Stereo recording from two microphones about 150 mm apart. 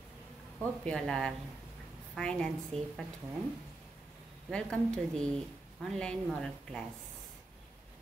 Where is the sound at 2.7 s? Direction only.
40° right (ahead or behind).